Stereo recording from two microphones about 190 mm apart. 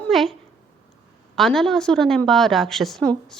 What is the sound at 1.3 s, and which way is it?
A woman's voice, centre (ahead or behind).